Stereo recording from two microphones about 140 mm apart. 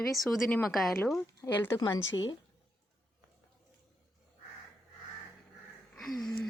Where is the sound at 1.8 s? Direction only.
30° left (ahead or behind).